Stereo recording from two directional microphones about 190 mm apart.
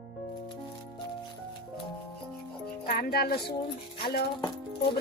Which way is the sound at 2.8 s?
50° left (ahead or behind).